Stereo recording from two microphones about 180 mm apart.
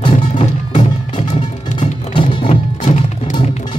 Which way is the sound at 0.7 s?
30° left (ahead or behind).